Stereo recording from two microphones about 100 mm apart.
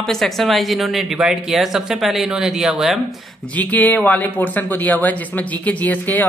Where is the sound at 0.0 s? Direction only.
5° left (ahead or behind).